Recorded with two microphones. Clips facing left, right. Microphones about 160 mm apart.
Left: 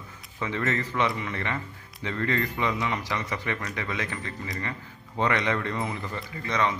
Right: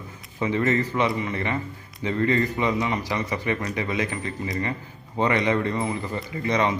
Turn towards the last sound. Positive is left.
turn(degrees=-15)  # may be behind; listen again after turning